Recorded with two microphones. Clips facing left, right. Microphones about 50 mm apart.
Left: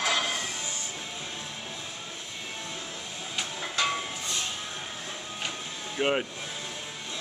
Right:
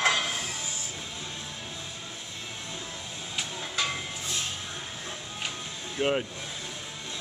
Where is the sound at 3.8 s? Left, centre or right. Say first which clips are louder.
Left 3 dB; centre.